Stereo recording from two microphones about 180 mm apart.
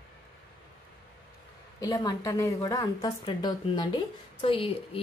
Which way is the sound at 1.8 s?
20° left (ahead or behind).